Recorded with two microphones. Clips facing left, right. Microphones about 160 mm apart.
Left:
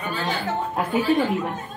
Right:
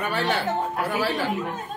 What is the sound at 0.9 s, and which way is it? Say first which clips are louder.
Speech: left 8 dB; 75° right (ahead or behind).